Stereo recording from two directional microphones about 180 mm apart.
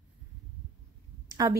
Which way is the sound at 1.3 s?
20° right (ahead or behind).